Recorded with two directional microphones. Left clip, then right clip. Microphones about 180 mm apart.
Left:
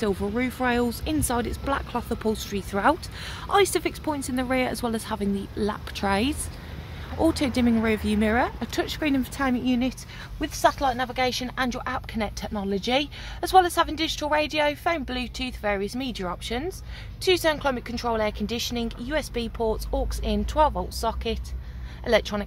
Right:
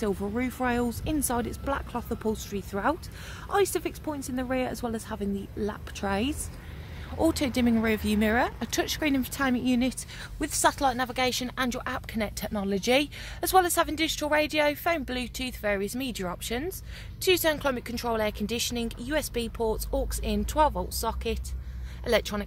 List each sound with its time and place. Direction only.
0.0 s speech: 10° right (ahead or behind)